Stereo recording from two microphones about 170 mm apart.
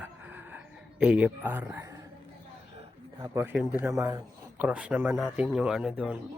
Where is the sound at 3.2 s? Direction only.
15° right (ahead or behind).